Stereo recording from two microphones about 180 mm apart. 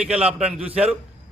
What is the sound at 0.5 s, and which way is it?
Speech, 35° right (ahead or behind).